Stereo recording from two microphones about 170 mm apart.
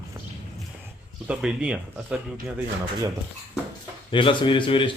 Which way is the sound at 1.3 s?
5° right (ahead or behind).